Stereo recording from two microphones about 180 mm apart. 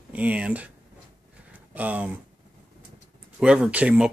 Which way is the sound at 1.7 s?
10° right (ahead or behind).